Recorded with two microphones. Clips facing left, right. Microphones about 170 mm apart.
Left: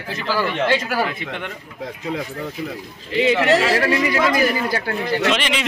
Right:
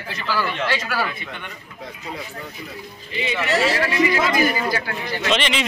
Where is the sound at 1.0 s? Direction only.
75° left (ahead or behind).